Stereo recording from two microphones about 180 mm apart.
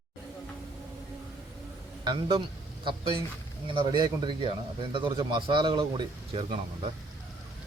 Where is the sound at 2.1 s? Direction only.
25° right (ahead or behind).